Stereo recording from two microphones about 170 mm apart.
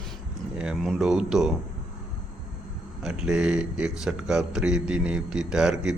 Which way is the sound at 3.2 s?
5° right (ahead or behind).